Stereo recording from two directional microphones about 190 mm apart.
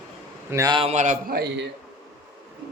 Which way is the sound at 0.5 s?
20° right (ahead or behind).